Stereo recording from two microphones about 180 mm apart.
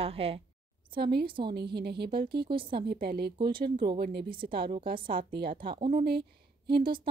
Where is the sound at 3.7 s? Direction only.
30° right (ahead or behind).